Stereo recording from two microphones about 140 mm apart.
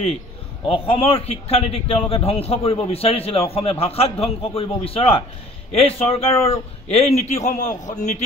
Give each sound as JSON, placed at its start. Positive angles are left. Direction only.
{"t": 0.7, "sound": "a man's voice", "side_deg": 40}